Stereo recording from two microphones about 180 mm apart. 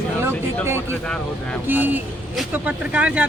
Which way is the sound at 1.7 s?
10° right (ahead or behind).